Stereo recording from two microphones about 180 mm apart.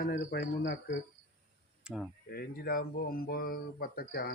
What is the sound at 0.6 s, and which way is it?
Speech, 90° left.